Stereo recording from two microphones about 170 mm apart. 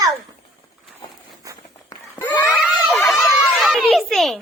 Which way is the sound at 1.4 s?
20° right (ahead or behind).